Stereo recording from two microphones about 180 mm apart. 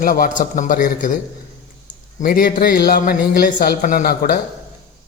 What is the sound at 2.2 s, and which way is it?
A man's voice, 50° left (ahead or behind).